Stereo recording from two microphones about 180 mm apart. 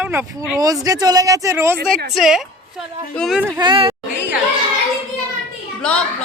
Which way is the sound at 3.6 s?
25° right (ahead or behind).